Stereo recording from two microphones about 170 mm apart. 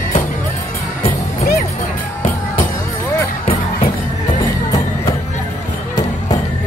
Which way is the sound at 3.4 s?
30° left (ahead or behind).